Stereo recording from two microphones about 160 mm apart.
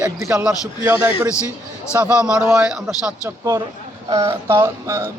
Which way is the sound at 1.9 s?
5° right (ahead or behind).